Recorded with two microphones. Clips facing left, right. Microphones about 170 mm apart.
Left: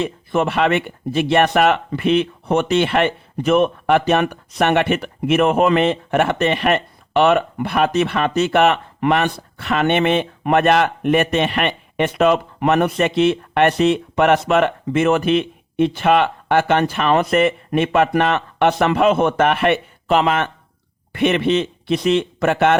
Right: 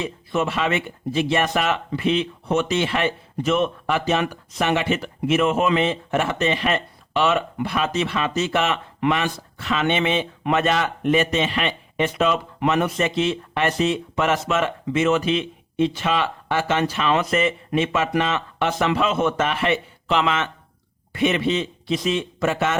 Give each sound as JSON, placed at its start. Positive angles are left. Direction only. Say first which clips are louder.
{"t": 0.0, "sound": "speech", "louder": "left 4 dB", "side_deg": 55}